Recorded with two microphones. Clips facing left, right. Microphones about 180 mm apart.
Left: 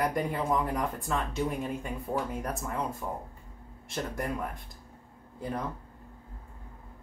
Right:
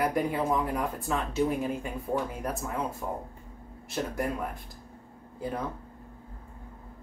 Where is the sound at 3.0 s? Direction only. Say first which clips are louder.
Right 2 dB; 20° right (ahead or behind).